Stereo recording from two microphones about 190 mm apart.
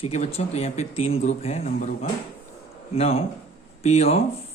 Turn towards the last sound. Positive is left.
turn(degrees=35)  # may be behind; listen again after turning